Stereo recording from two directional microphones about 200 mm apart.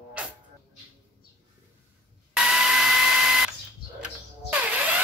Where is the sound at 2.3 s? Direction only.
5° right (ahead or behind).